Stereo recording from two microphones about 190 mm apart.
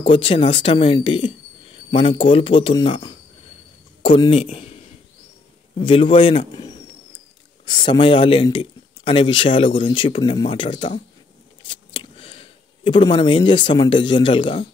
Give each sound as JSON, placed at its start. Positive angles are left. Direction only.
{"t": 0.0, "sound": "a man's voice", "side_deg": 30}
{"t": 4.2, "sound": "a man's voice", "side_deg": 30}
{"t": 5.8, "sound": "a man's voice", "side_deg": 25}
{"t": 11.6, "sound": "a sound", "side_deg": 25}